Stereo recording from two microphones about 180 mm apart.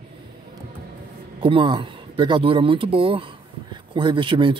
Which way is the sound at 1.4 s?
30° right (ahead or behind).